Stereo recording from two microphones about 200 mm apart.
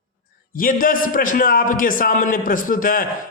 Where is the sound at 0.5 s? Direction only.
45° left (ahead or behind).